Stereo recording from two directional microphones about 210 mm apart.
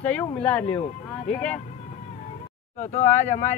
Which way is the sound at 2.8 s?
35° left (ahead or behind).